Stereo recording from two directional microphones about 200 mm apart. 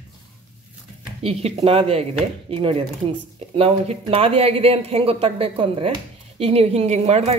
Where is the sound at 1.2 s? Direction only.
30° right (ahead or behind).